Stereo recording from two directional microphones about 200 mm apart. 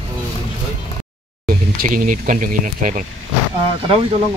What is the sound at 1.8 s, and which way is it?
Speech, 40° right (ahead or behind).